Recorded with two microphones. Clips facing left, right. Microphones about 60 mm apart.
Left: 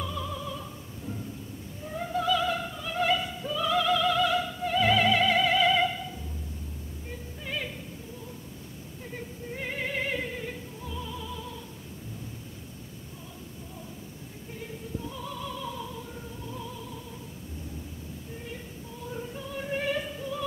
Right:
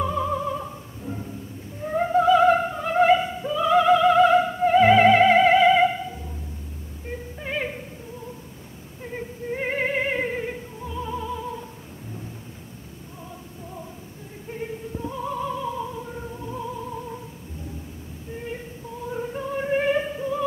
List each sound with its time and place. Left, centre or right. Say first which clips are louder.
0.0 s opera: right 10 dB; right
1.0 s a sound: right 5 dB; right
1.9 s opera: right 10 dB; right
7.1 s music: right 7 dB; right
9.0 s music: right 8 dB; right
14.5 s opera: right 7 dB; right
19.1 s music: right 9 dB; right